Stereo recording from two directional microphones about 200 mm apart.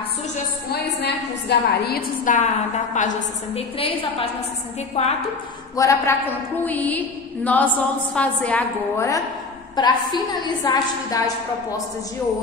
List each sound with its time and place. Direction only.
0.7 s a woman's voice: 55° left (ahead or behind); by 5.1 s 30° left (ahead or behind)
5.8 s a woman's voice: 15° left (ahead or behind)